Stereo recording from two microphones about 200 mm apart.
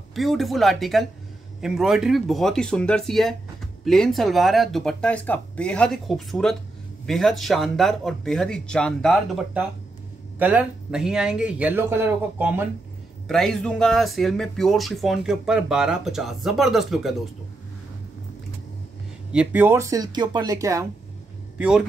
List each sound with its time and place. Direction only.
0.1 s speech: centre (ahead or behind)
13.3 s speech: 5° left (ahead or behind)
19.3 s speech: 10° right (ahead or behind)
21.5 s a man's voice: 5° right (ahead or behind)